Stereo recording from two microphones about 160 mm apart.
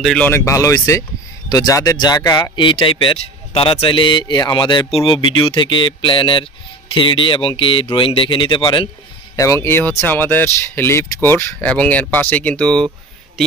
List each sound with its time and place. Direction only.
0.0 s speech: 5° left (ahead or behind)
0.3 s a man's voice: 20° left (ahead or behind)
9.4 s speech: 20° left (ahead or behind)